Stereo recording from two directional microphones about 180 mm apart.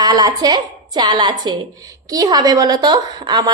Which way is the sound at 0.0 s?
20° right (ahead or behind).